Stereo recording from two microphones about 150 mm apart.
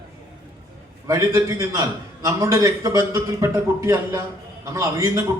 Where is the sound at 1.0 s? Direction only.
20° right (ahead or behind).